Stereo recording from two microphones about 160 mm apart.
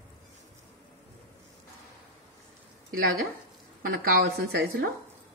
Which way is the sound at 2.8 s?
70° right (ahead or behind).